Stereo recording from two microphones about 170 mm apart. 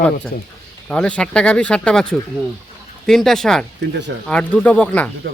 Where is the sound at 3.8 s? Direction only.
90° right.